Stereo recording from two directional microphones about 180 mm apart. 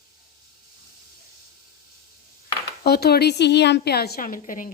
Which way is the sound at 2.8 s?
60° left (ahead or behind).